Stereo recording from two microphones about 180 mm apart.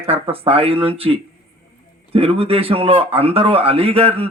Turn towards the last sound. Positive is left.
turn(degrees=-35)  # may be behind; listen again after turning